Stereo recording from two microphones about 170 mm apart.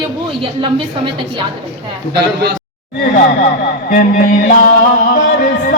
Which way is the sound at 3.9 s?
55° left (ahead or behind).